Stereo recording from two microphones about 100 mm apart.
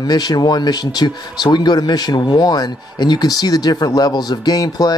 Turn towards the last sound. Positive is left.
turn(degrees=40)  # may be behind; listen again after turning